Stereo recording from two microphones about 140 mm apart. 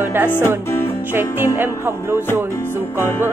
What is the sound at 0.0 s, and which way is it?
Speech, 15° right (ahead or behind).